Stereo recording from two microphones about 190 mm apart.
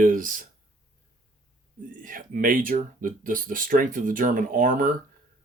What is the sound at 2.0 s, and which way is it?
Speech, 45° right (ahead or behind).